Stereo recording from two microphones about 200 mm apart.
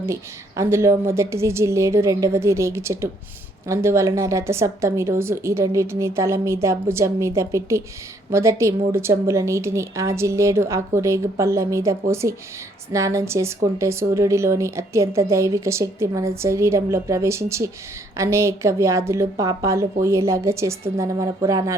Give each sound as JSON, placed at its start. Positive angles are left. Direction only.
{"t": 0.0, "sound": "speech", "side_deg": -15}